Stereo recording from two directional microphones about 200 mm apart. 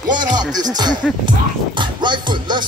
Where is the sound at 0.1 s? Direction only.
20° right (ahead or behind).